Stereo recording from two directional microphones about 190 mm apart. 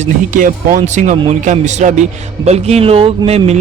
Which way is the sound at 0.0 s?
45° right (ahead or behind).